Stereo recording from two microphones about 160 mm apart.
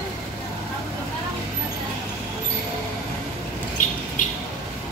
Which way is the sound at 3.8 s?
50° left (ahead or behind).